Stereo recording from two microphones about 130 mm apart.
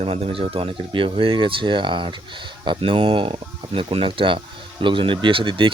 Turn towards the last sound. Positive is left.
turn(degrees=-40)  # may be behind; listen again after turning